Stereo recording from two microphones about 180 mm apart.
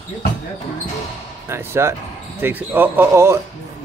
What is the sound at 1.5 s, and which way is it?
Speech, 15° right (ahead or behind).